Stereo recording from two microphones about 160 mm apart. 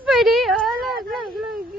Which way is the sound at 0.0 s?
Centre (ahead or behind).